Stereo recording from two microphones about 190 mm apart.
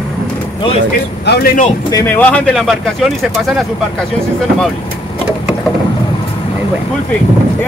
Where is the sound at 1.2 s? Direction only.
55° left (ahead or behind).